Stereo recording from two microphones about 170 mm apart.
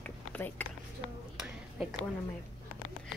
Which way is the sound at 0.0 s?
10° left (ahead or behind).